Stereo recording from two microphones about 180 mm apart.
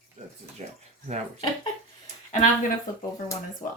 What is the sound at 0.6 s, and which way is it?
Bathtub, 40° right (ahead or behind).